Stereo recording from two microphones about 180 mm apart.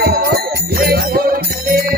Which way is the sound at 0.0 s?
60° right (ahead or behind).